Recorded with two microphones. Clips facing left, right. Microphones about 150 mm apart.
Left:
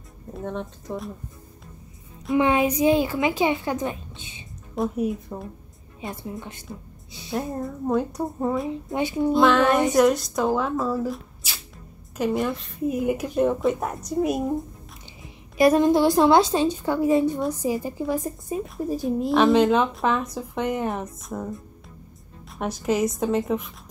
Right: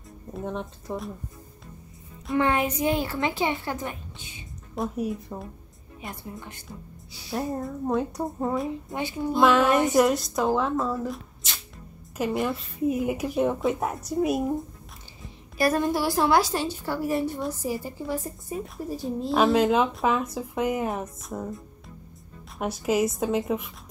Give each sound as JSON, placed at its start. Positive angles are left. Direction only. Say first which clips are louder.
{"t": 0.4, "sound": "speech", "louder": "left 1 dB", "side_deg": -5}
{"t": 2.3, "sound": "a woman's voice", "louder": "left 4 dB", "side_deg": 15}
{"t": 4.7, "sound": "a woman's voice", "louder": "left 4 dB", "side_deg": 0}
{"t": 7.1, "sound": "a sound", "louder": "left 3 dB", "side_deg": 20}
{"t": 7.3, "sound": "a woman's voice", "louder": "left 1 dB", "side_deg": 0}
{"t": 8.9, "sound": "a woman's voice", "louder": "left 7 dB", "side_deg": 20}
{"t": 9.4, "sound": "a woman's voice", "louder": "even", "side_deg": 0}
{"t": 15.5, "sound": "a woman's voice", "louder": "left 6 dB", "side_deg": 20}
{"t": 19.3, "sound": "a woman's voice", "louder": "left 2 dB", "side_deg": -5}
{"t": 22.6, "sound": "a woman's voice", "louder": "left 1 dB", "side_deg": -5}